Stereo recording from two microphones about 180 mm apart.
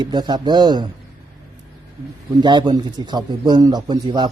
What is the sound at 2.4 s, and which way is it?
Speech, 25° right (ahead or behind).